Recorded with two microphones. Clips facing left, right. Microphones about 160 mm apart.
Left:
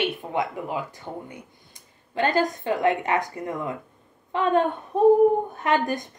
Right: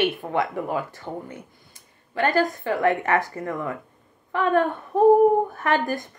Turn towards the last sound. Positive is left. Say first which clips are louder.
# even
turn(degrees=20)  # may be behind; listen again after turning